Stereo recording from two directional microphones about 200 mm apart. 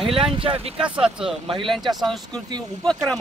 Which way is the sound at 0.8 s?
5° right (ahead or behind).